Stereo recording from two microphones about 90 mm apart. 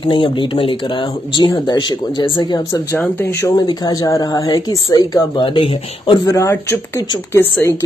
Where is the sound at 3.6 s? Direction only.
50° left (ahead or behind); by 6.2 s 65° left (ahead or behind).